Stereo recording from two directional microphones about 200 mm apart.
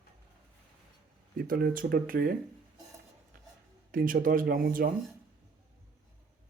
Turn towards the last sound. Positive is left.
turn(degrees=-45)  # may be behind; listen again after turning